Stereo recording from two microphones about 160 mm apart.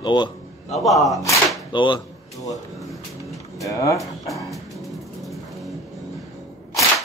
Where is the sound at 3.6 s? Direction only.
20° left (ahead or behind).